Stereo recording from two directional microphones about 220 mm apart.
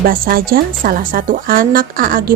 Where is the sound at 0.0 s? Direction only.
40° right (ahead or behind).